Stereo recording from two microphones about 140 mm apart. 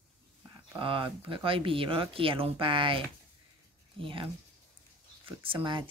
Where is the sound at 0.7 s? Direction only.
40° right (ahead or behind).